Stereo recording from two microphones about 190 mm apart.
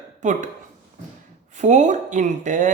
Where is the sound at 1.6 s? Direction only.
40° right (ahead or behind).